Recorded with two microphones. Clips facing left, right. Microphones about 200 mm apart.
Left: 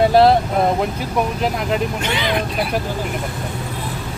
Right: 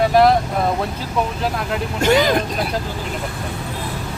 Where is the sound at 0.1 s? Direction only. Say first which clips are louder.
Left 1 dB; 30° left (ahead or behind).